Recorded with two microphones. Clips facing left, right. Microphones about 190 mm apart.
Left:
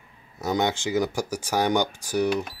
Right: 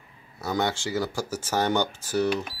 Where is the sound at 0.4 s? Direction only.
20° left (ahead or behind).